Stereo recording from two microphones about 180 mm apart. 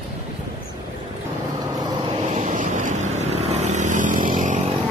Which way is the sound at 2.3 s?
40° right (ahead or behind).